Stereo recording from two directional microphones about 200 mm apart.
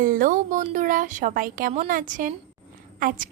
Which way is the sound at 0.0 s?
40° right (ahead or behind).